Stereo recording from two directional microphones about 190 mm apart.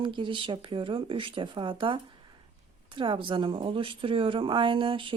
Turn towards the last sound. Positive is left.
turn(degrees=-25)  # may be behind; listen again after turning